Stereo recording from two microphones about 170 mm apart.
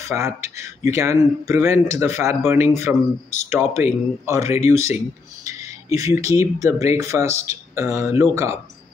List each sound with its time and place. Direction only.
0.1 s speech: 15° right (ahead or behind)